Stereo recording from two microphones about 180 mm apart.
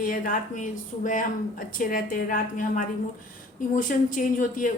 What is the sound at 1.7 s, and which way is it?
A woman's voice, 50° left (ahead or behind).